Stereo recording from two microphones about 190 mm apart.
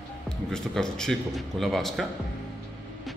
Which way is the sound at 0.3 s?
5° left (ahead or behind).